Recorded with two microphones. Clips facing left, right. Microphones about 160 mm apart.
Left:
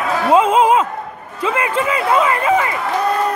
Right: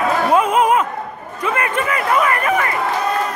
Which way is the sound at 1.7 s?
25° left (ahead or behind).